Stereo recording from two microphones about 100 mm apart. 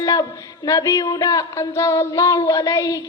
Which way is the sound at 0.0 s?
40° left (ahead or behind).